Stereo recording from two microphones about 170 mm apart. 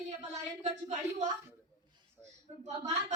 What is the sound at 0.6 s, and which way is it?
Speech, 45° right (ahead or behind).